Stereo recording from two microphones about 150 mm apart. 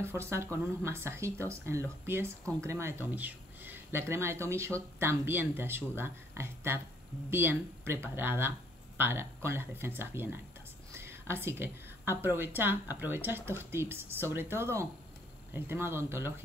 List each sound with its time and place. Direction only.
0.0 s speech: 15° right (ahead or behind)